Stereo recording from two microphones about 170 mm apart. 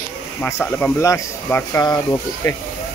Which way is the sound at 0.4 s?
10° left (ahead or behind).